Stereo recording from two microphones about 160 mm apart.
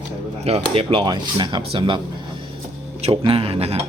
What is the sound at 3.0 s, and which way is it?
Speech, 35° right (ahead or behind).